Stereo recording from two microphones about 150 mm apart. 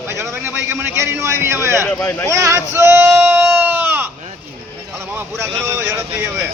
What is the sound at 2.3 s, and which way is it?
Speech, 20° right (ahead or behind).